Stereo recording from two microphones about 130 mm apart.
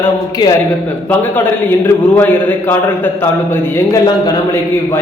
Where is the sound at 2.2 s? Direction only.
15° left (ahead or behind).